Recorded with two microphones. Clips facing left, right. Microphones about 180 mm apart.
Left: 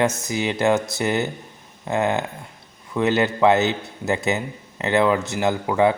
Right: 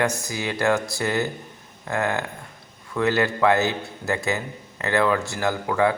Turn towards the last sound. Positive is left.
turn(degrees=20)  # may be behind; listen again after turning